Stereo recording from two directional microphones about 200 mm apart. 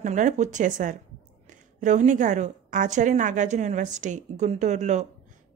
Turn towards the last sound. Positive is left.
turn(degrees=-35)  # may be behind; listen again after turning